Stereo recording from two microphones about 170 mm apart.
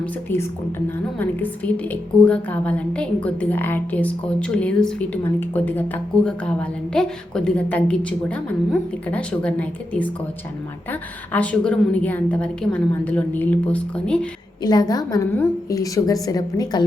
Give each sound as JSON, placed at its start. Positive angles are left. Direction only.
{"t": 0.0, "sound": "a woman's voice", "side_deg": 15}
{"t": 11.3, "sound": "a woman's voice", "side_deg": 10}
{"t": 14.6, "sound": "a woman's voice", "side_deg": 25}